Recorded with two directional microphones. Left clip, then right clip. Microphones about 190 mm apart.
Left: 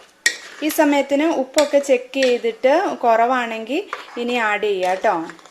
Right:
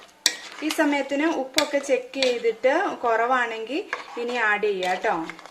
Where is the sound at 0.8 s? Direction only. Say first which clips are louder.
Left 7 dB; 40° left (ahead or behind).